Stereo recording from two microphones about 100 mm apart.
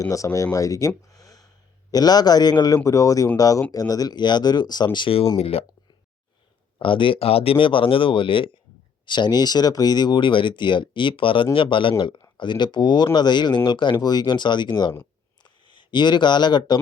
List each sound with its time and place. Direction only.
0.0 s speech: 30° left (ahead or behind)
0.5 s a sound: 35° left (ahead or behind)
1.9 s speech: 40° left (ahead or behind)
5.4 s speech: 80° left
6.7 s speech: 55° left (ahead or behind)